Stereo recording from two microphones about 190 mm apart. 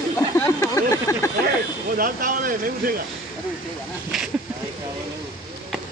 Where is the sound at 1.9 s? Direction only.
45° right (ahead or behind).